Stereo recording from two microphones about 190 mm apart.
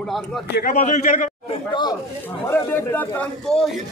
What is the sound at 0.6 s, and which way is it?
Speech, 35° left (ahead or behind).